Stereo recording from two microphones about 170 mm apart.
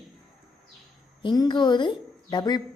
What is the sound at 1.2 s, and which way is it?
A woman's voice, 25° left (ahead or behind).